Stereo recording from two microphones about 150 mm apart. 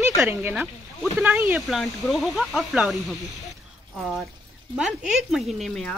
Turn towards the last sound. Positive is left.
turn(degrees=0)  # may be behind; listen again after turning